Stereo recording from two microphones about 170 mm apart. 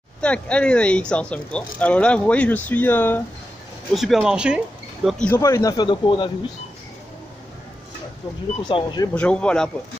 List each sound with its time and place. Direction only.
0.2 s speech: 5° left (ahead or behind)
3.9 s speech: centre (ahead or behind)
5.3 s speech: 15° left (ahead or behind)
8.6 s speech: 25° left (ahead or behind)
9.1 s speech: 5° left (ahead or behind)